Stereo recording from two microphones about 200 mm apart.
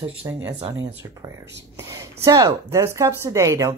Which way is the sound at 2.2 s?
15° right (ahead or behind).